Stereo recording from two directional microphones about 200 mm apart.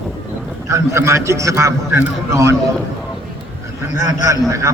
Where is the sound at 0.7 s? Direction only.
15° right (ahead or behind).